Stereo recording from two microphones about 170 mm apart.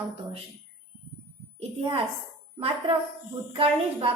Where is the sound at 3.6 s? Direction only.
35° right (ahead or behind).